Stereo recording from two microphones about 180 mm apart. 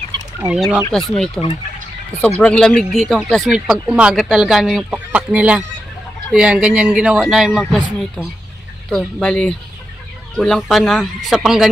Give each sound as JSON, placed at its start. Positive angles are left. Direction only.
{"t": 0.1, "sound": "fowl", "side_deg": -25}
{"t": 0.6, "sound": "speech", "side_deg": -5}